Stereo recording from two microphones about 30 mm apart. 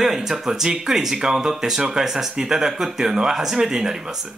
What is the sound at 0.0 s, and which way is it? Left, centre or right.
Speech, centre.